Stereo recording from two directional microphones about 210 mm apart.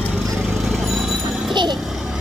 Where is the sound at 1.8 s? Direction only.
Centre (ahead or behind).